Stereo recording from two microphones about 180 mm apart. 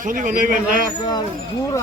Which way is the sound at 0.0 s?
50° right (ahead or behind).